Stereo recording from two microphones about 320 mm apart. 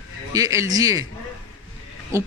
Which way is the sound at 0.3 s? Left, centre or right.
Centre.